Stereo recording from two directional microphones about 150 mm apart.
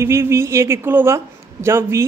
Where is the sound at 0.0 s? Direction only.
15° right (ahead or behind).